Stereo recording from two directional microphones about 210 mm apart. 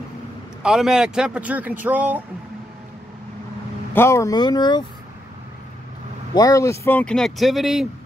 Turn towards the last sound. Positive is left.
turn(degrees=0)  # may be behind; listen again after turning